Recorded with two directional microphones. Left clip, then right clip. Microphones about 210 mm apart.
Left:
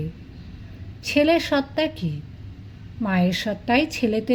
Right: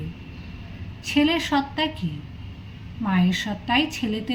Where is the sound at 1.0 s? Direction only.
45° left (ahead or behind).